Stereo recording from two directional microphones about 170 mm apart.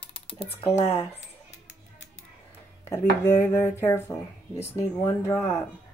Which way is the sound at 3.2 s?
15° left (ahead or behind).